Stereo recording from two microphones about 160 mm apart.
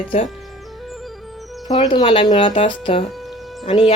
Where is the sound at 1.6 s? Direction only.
25° left (ahead or behind).